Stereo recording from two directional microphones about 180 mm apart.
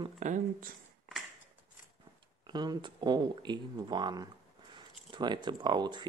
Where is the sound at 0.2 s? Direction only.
45° right (ahead or behind).